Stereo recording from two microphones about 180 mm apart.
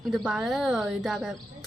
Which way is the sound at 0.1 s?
5° right (ahead or behind).